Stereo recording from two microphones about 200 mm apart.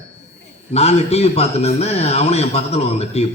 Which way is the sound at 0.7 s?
30° left (ahead or behind).